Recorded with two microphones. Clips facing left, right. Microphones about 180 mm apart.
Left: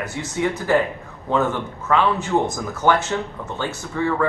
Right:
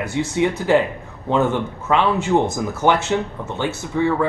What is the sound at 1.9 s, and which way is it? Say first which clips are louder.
Speech: right 2 dB; 10° right (ahead or behind).